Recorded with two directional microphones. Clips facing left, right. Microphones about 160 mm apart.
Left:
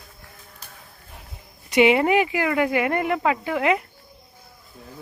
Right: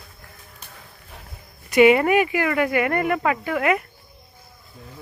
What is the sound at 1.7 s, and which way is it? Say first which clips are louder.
Speech: right 2 dB; 15° left (ahead or behind).